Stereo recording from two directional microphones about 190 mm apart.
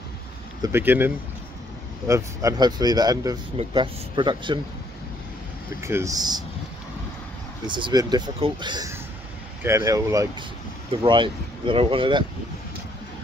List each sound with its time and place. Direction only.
0.6 s speech: 10° right (ahead or behind)
5.8 s speech: 15° right (ahead or behind)
7.6 s speech: 25° right (ahead or behind)